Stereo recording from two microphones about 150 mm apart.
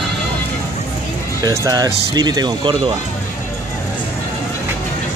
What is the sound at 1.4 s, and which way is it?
Speech, 25° right (ahead or behind).